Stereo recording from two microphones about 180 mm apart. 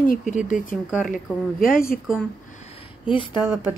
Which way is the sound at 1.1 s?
50° left (ahead or behind).